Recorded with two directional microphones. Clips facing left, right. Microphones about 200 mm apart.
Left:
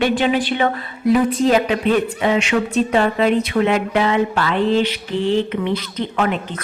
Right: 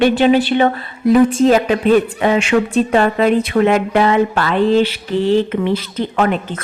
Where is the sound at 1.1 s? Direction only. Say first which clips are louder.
Right 4 dB; 45° right (ahead or behind).